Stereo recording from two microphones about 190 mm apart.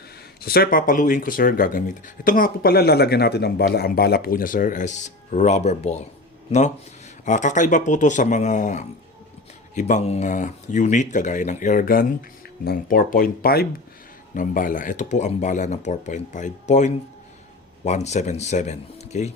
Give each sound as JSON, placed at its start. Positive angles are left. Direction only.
{"t": 0.4, "sound": "speech", "side_deg": 55}
{"t": 7.3, "sound": "speech", "side_deg": 40}